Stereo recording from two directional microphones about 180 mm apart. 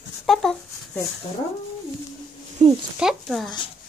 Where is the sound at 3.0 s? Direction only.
Centre (ahead or behind).